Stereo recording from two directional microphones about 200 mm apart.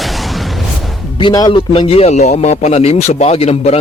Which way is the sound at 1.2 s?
20° left (ahead or behind).